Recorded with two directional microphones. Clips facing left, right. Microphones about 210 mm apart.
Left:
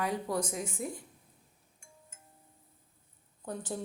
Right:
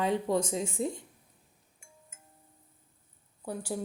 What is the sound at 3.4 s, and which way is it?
Speech, 10° right (ahead or behind).